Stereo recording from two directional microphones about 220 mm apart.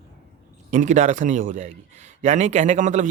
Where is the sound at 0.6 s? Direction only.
35° right (ahead or behind).